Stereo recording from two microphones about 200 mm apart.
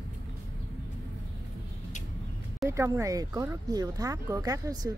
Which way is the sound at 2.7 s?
15° right (ahead or behind).